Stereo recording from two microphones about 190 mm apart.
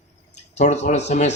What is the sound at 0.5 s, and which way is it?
Speech, 35° left (ahead or behind).